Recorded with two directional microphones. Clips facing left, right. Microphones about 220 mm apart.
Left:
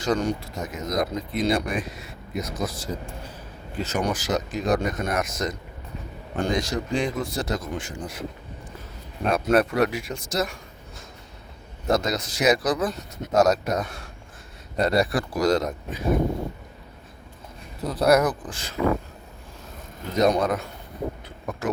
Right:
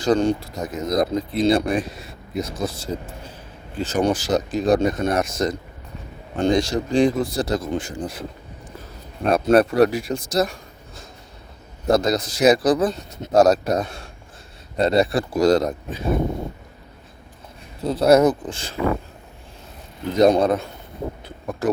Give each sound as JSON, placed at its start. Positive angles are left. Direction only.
{"t": 0.0, "sound": "speech", "side_deg": -30}
{"t": 9.3, "sound": "speech", "side_deg": -35}
{"t": 17.8, "sound": "speech", "side_deg": -25}
{"t": 20.1, "sound": "speech", "side_deg": -30}
{"t": 21.6, "sound": "speech", "side_deg": -35}